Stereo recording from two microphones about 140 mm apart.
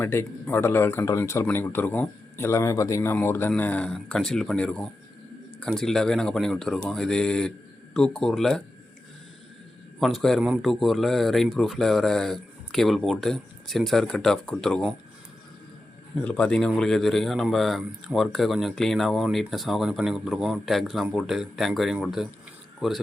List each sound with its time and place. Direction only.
0.0 s speech: 15° left (ahead or behind)
10.0 s speech: centre (ahead or behind)
16.1 s speech: 10° left (ahead or behind)